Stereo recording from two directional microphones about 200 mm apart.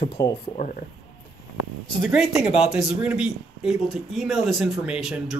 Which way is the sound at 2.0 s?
Centre (ahead or behind).